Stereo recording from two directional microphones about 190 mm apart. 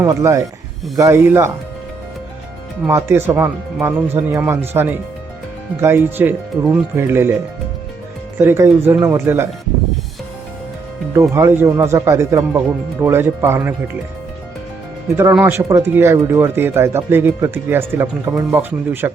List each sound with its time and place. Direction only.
0.0 s speech: 15° right (ahead or behind)
2.8 s speech: 10° right (ahead or behind)
8.4 s speech: 15° right (ahead or behind)
11.1 s speech: 15° right (ahead or behind)
15.1 s speech: 15° right (ahead or behind)